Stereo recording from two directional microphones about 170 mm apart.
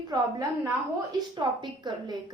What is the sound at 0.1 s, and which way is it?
A woman's voice, 20° right (ahead or behind).